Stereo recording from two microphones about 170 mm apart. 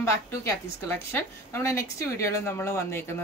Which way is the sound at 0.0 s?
15° left (ahead or behind).